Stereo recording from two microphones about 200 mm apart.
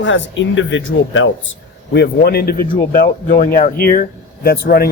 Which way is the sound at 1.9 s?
55° left (ahead or behind).